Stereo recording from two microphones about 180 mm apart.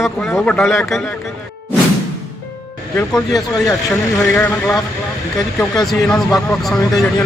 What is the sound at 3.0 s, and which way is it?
Speech, 20° left (ahead or behind).